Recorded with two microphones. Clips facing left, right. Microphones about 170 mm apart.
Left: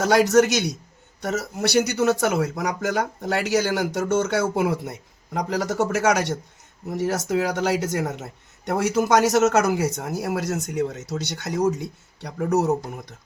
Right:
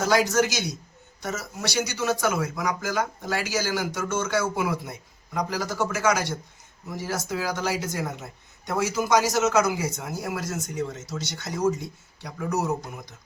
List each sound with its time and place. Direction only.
0.0 s speech: 65° left (ahead or behind)
8.6 s speech: 60° left (ahead or behind)